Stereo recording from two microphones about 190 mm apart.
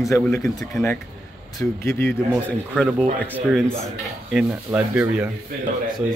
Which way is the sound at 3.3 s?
5° right (ahead or behind).